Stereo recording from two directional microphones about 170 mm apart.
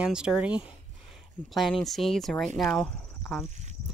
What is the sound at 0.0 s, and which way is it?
Speech, 5° right (ahead or behind).